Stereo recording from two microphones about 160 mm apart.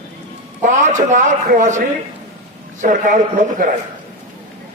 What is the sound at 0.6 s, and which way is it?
A man's voice, 50° right (ahead or behind).